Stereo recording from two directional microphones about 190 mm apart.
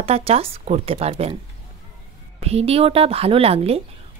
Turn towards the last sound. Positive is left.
turn(degrees=-30)  # may be behind; listen again after turning